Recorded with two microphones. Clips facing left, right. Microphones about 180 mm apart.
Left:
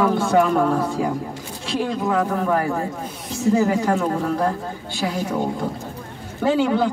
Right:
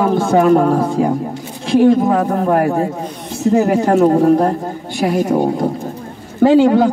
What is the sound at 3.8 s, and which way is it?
Speech, 45° right (ahead or behind).